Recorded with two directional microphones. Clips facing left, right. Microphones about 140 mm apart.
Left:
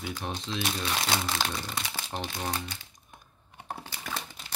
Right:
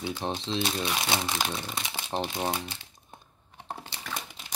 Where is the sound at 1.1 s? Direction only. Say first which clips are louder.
Right 1 dB; 10° right (ahead or behind).